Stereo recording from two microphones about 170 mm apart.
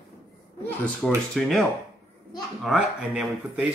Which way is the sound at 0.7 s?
Centre (ahead or behind).